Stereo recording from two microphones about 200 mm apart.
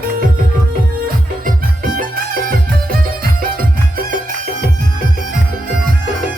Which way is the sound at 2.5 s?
45° right (ahead or behind).